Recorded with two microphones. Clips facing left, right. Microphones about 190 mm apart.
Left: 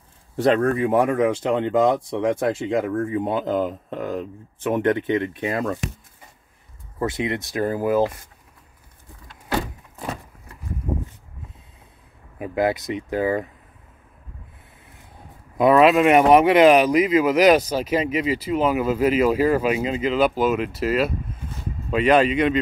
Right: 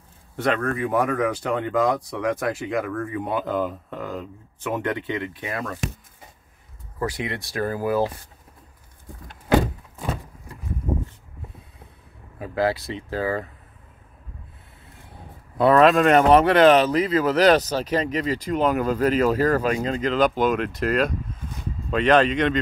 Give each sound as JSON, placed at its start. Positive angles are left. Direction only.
{"t": 0.4, "sound": "speech", "side_deg": 30}
{"t": 5.3, "sound": "speech", "side_deg": 25}
{"t": 7.0, "sound": "speech", "side_deg": 20}
{"t": 12.4, "sound": "speech", "side_deg": 20}
{"t": 15.5, "sound": "speech", "side_deg": 10}